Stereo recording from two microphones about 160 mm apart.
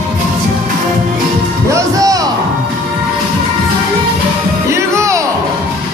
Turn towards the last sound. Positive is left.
turn(degrees=-20)  # may be behind; listen again after turning